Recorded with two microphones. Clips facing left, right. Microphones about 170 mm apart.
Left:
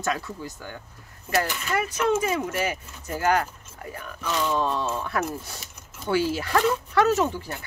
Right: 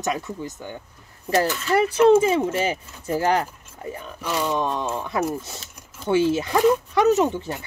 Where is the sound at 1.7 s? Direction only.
30° right (ahead or behind).